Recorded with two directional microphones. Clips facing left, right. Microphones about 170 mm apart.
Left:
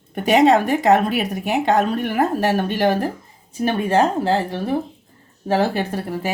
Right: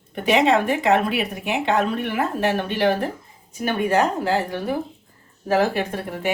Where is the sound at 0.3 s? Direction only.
40° left (ahead or behind).